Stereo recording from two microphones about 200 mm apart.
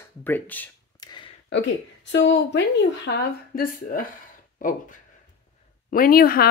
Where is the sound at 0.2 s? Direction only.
10° left (ahead or behind).